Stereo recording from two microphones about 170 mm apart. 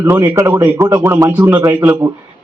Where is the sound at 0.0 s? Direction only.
15° right (ahead or behind).